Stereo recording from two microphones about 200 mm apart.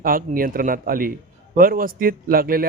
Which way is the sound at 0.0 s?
45° right (ahead or behind).